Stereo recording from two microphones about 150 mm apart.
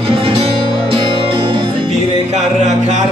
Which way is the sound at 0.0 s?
35° right (ahead or behind).